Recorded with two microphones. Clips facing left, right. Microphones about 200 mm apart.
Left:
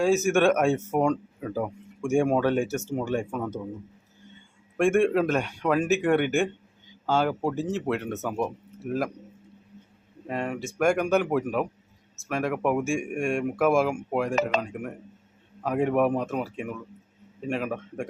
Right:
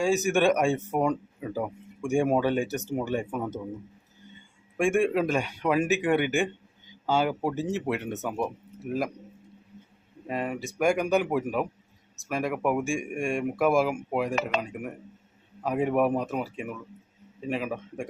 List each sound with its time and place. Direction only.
0.0 s speech: centre (ahead or behind)
2.6 s speech: 15° right (ahead or behind)
3.0 s speech: 5° right (ahead or behind)
4.8 s speech: centre (ahead or behind)
10.2 s speech: 5° right (ahead or behind)